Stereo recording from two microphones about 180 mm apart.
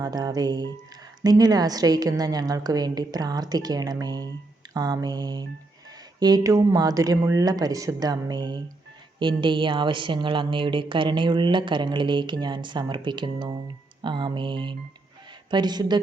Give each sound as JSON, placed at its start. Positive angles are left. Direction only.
{"t": 0.0, "sound": "speech", "side_deg": -20}